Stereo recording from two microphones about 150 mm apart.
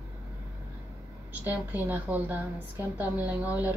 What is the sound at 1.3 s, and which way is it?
A woman's voice, 10° right (ahead or behind).